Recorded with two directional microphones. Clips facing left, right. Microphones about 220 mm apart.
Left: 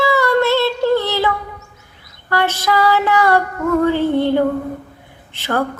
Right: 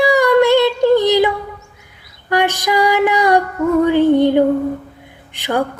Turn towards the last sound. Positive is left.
turn(degrees=-15)  # may be behind; listen again after turning